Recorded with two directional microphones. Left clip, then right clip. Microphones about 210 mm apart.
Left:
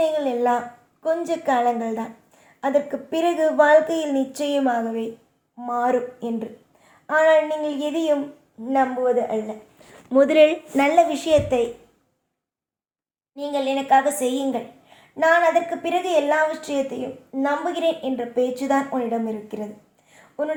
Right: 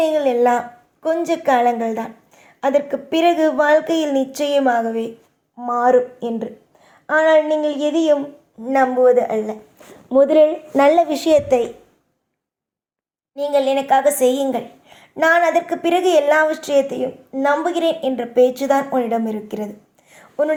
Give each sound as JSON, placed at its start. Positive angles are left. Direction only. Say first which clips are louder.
{"t": 0.0, "sound": "a sound", "louder": "right 5 dB", "side_deg": -25}
{"t": 1.0, "sound": "a woman's voice", "louder": "right 4 dB", "side_deg": -25}
{"t": 10.1, "sound": "speech", "louder": "right 3 dB", "side_deg": -10}
{"t": 10.8, "sound": "a woman's voice", "louder": "right 4 dB", "side_deg": -20}
{"t": 13.3, "sound": "a woman's voice", "louder": "right 7 dB", "side_deg": -35}